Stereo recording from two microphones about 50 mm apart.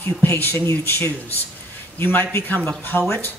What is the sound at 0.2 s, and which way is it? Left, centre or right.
A man's voice, left.